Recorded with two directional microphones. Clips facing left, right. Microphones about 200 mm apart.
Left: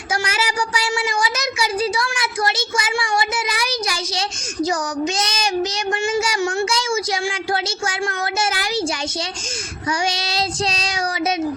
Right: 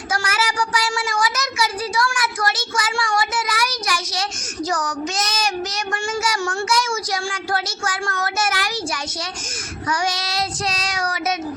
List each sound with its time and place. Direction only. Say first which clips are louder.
0.1 s a child's voice: left 1 dB; 25° left (ahead or behind)
6.1 s a child's voice: left 1 dB; 30° left (ahead or behind)
10.1 s a child's voice: left 1 dB; 30° left (ahead or behind)